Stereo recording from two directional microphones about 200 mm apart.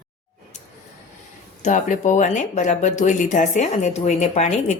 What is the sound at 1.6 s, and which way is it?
Speech, 40° left (ahead or behind).